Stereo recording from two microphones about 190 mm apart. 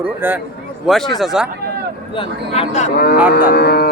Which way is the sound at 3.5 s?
55° left (ahead or behind).